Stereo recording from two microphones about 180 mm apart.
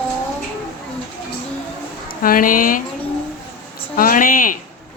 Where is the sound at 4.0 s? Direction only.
50° left (ahead or behind).